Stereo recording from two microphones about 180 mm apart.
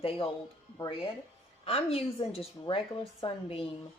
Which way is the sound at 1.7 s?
35° left (ahead or behind).